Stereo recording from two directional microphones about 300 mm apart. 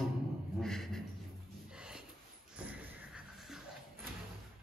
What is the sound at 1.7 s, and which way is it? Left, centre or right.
Snort, centre.